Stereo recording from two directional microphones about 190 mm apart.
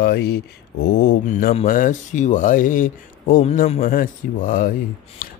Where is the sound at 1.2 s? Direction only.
45° left (ahead or behind).